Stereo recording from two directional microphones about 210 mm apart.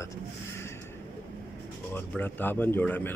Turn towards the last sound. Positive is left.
turn(degrees=10)  # may be behind; listen again after turning